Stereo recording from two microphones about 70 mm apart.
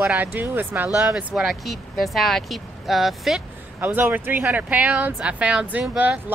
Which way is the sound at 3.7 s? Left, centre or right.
Right.